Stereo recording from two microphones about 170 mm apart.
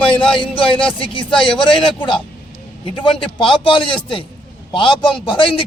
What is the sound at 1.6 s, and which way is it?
A man's voice, 30° left (ahead or behind).